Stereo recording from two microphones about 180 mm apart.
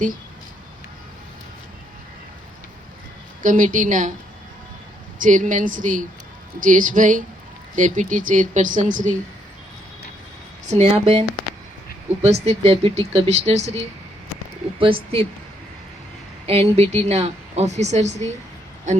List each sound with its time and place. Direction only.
3.4 s speech: 45° right (ahead or behind)
5.2 s speech: 45° right (ahead or behind)
10.7 s a woman's voice: 35° right (ahead or behind)
14.8 s a woman's voice: 30° right (ahead or behind)
16.5 s a woman's voice: 35° right (ahead or behind)